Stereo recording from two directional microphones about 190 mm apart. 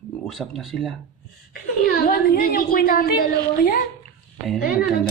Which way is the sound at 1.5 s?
50° left (ahead or behind).